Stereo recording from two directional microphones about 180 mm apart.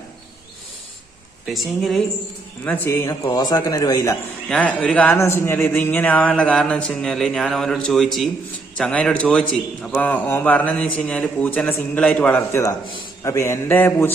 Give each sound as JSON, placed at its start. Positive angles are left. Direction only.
{"t": 1.5, "sound": "a man's voice", "side_deg": 0}
{"t": 2.6, "sound": "a man's voice", "side_deg": 10}
{"t": 4.4, "sound": "a man's voice", "side_deg": 5}